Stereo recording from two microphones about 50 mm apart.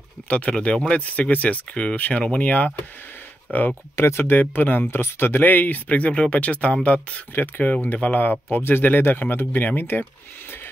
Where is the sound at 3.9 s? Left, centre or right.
Left.